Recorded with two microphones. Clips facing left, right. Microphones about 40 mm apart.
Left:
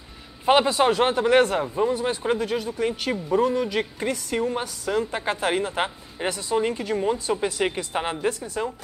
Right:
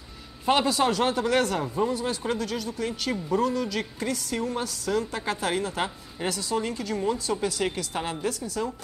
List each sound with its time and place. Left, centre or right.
0.5 s speech: left